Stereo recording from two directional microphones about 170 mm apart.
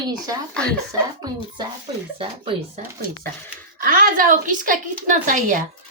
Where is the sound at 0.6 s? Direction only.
5° left (ahead or behind).